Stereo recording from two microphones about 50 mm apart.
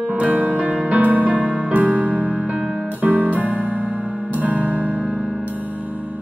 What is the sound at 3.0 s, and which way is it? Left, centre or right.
Music, right.